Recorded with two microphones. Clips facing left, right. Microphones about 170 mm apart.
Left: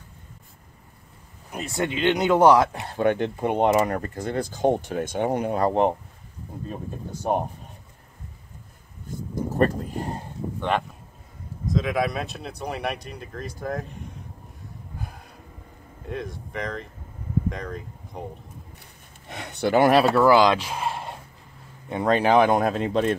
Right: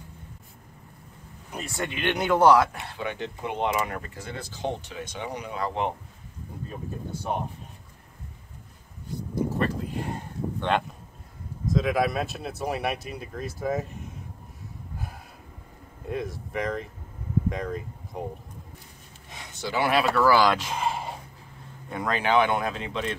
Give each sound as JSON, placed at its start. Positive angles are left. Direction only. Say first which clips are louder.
{"t": 1.6, "sound": "speech", "louder": "left 6 dB", "side_deg": 20}
{"t": 2.9, "sound": "speech", "louder": "left 10 dB", "side_deg": 50}
{"t": 9.0, "sound": "a sound", "louder": "right 1 dB", "side_deg": 45}
{"t": 11.6, "sound": "speech", "louder": "even", "side_deg": 0}
{"t": 16.1, "sound": "speech", "louder": "right 1 dB", "side_deg": -5}
{"t": 19.2, "sound": "speech", "louder": "left 9 dB", "side_deg": 65}
{"t": 20.1, "sound": "speech", "louder": "left 4 dB", "side_deg": 20}
{"t": 21.8, "sound": "speech", "louder": "left 6 dB", "side_deg": 25}
{"t": 22.1, "sound": "speech", "louder": "left 5 dB", "side_deg": 40}